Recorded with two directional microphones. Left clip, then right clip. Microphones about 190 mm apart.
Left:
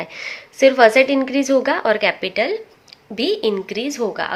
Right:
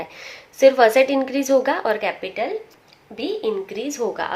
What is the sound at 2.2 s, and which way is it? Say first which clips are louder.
A woman's voice: left 5 dB; 45° left (ahead or behind).